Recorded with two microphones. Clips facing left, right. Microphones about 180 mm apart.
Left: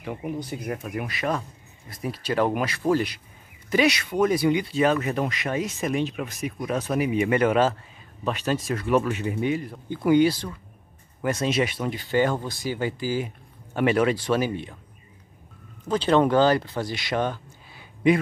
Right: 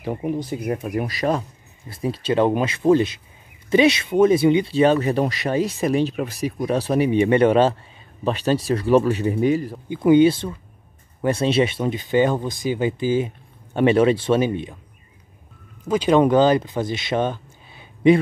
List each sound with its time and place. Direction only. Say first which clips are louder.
0.0 s speech: right 6 dB; 35° right (ahead or behind)
9.8 s speech: right 5 dB; 20° right (ahead or behind)
15.9 s speech: right 4 dB; 10° right (ahead or behind)